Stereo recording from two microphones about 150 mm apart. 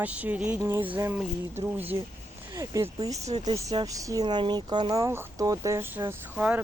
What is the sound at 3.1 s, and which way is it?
Speech, 50° right (ahead or behind).